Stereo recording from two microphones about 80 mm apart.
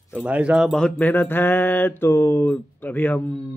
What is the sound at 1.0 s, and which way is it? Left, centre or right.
Speech, left.